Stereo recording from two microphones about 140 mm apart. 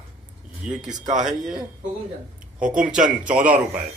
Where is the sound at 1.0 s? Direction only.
65° right (ahead or behind).